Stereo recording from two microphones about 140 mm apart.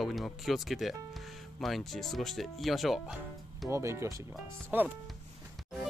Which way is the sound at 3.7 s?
20° right (ahead or behind).